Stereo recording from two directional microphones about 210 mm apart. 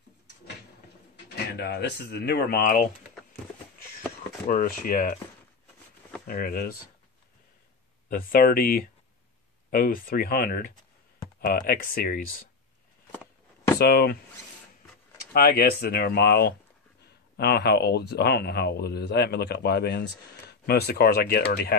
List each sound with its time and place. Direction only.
1.5 s speech: 50° left (ahead or behind)
4.5 s speech: 40° left (ahead or behind)
6.2 s speech: 45° left (ahead or behind)
8.1 s speech: 45° left (ahead or behind)
13.7 s speech: 50° left (ahead or behind)
15.3 s speech: 45° left (ahead or behind)